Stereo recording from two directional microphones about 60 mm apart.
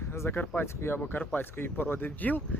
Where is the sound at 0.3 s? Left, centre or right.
Left.